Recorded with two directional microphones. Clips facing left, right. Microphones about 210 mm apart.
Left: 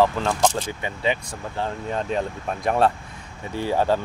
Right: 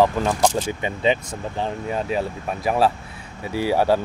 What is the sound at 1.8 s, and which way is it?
Speech, 10° right (ahead or behind).